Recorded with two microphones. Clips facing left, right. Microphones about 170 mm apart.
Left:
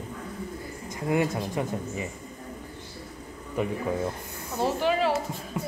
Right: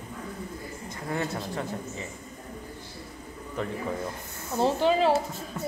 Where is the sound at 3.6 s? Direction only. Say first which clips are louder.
Left 4 dB; 10° left (ahead or behind).